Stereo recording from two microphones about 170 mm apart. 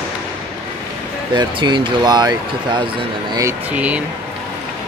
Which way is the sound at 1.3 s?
25° right (ahead or behind).